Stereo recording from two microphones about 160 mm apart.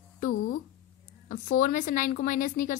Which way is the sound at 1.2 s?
60° left (ahead or behind).